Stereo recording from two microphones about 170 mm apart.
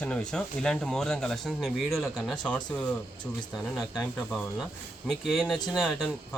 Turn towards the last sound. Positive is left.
turn(degrees=5)  # may be behind; listen again after turning